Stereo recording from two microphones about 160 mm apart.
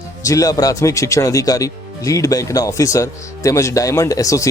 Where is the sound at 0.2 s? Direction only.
20° left (ahead or behind).